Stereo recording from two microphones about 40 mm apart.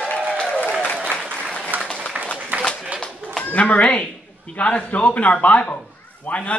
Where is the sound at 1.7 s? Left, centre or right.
Right.